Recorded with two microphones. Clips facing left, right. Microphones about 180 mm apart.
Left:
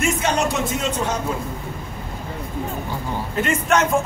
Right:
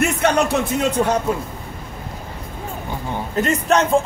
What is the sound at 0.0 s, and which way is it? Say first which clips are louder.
A man's voice: right 3 dB; 60° right (ahead or behind).